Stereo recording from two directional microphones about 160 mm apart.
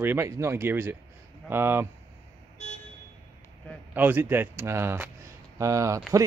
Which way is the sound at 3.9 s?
10° right (ahead or behind).